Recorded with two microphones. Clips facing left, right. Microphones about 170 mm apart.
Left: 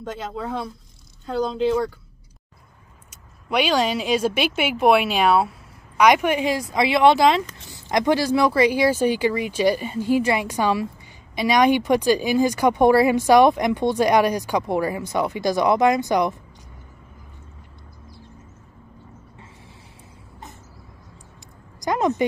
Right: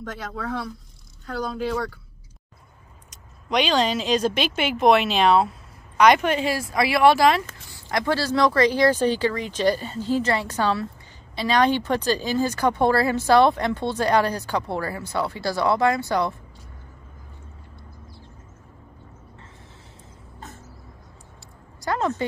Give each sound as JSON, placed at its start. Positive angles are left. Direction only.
{"t": 0.0, "sound": "speech", "side_deg": 20}
{"t": 3.1, "sound": "speech", "side_deg": 10}
{"t": 21.7, "sound": "a sound", "side_deg": 15}